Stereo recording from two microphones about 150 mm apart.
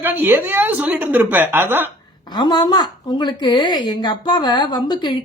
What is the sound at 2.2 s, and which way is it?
A woman's voice, 30° left (ahead or behind).